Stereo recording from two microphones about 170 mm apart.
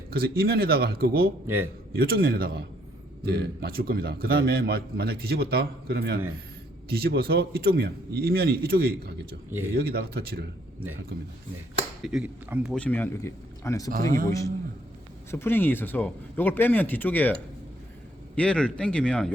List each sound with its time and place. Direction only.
0.1 s a man's voice: 65° right (ahead or behind)
1.5 s a man's voice: 15° right (ahead or behind)
2.0 s a man's voice: 60° right (ahead or behind)
12.0 s speech: 5° right (ahead or behind)
12.7 s speech: 10° left (ahead or behind)
13.9 s a man's voice: 55° right (ahead or behind)
14.3 s a man's voice: 20° left (ahead or behind)
18.3 s speech: 5° left (ahead or behind)